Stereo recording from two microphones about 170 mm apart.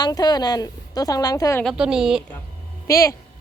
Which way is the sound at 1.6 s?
5° right (ahead or behind).